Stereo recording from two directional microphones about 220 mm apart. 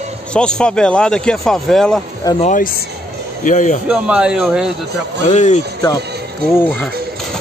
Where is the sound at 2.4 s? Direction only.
35° left (ahead or behind).